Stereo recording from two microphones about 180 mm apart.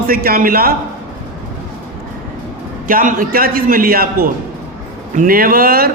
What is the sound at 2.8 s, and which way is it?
A man's voice, 45° right (ahead or behind).